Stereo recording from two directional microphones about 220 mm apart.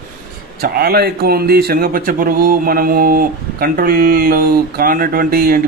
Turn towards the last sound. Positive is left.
turn(degrees=-40)  # may be behind; listen again after turning